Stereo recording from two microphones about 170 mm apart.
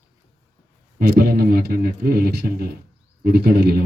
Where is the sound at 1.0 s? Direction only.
65° right (ahead or behind).